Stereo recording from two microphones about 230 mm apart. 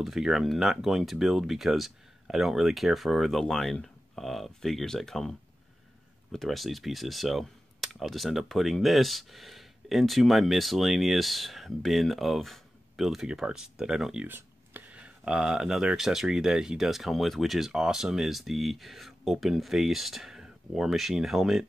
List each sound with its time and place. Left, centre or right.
0.0 s speech: centre
6.3 s speech: centre